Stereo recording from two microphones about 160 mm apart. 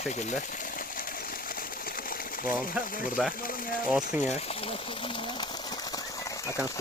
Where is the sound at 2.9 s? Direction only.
60° left (ahead or behind).